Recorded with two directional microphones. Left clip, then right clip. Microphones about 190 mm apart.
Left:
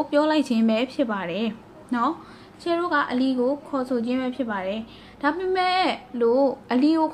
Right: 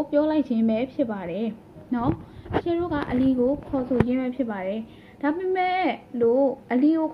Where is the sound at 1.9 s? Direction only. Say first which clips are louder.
Left 3 dB; 10° right (ahead or behind).